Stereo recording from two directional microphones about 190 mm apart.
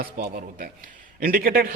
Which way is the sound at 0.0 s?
50° right (ahead or behind).